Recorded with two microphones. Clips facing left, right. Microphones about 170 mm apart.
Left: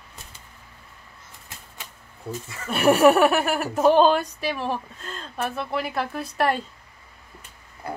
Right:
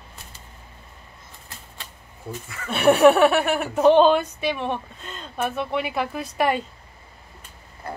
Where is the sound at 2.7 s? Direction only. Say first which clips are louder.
Right 1 dB; centre (ahead or behind).